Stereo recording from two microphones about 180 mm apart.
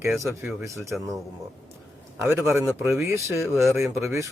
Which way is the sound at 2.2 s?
15° right (ahead or behind).